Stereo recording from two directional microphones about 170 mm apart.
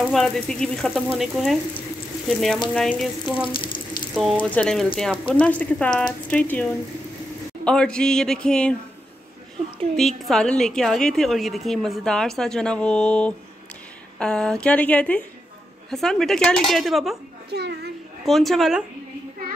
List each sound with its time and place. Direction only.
0.0 s a woman's voice: 5° left (ahead or behind)
3.3 s water: 30° left (ahead or behind)
4.1 s a woman's voice: centre (ahead or behind)
9.9 s a woman's voice: centre (ahead or behind)
17.5 s a child's voice: 75° right (ahead or behind)
18.2 s a woman's voice: centre (ahead or behind)